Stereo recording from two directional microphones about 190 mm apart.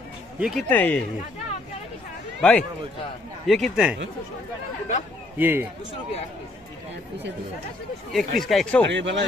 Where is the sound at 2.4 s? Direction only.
5° left (ahead or behind).